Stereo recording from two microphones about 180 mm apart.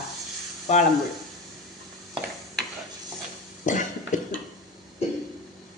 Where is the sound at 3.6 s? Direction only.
45° left (ahead or behind).